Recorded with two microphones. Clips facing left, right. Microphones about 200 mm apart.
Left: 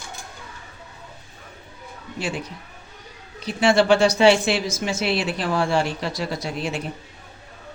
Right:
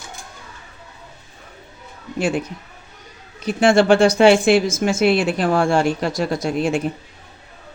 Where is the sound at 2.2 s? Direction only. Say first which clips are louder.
Right 8 dB; 50° right (ahead or behind).